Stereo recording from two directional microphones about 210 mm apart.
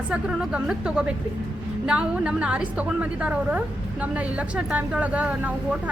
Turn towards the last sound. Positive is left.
turn(degrees=-5)  # may be behind; listen again after turning